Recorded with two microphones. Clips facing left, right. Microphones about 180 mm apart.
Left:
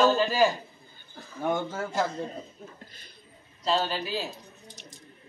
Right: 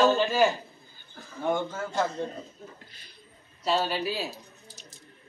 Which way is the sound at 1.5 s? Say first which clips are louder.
Even; 10° left (ahead or behind).